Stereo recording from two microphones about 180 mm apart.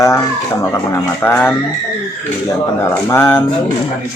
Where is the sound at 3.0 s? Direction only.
10° left (ahead or behind).